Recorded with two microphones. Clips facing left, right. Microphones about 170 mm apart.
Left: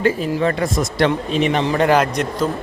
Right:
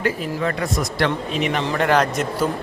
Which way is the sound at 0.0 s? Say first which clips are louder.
Left 5 dB; 30° left (ahead or behind).